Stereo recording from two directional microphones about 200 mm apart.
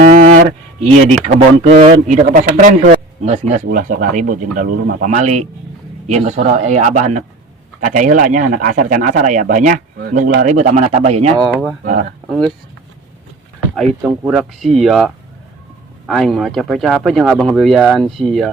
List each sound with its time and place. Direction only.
0.1 s a sound: 40° right (ahead or behind)
1.2 s a man's voice: 30° right (ahead or behind)
11.3 s speech: centre (ahead or behind)
14.0 s speech: 5° right (ahead or behind)